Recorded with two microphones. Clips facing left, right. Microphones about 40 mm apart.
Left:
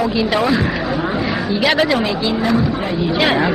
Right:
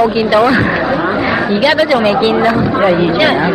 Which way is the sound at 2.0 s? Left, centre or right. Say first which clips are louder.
Right 8 dB; right.